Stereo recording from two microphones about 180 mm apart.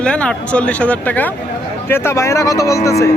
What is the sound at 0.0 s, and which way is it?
Speech, 5° left (ahead or behind).